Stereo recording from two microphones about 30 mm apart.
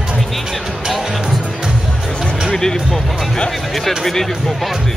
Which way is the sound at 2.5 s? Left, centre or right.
Centre.